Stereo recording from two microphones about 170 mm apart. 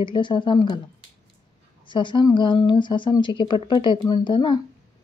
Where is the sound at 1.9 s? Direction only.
30° left (ahead or behind).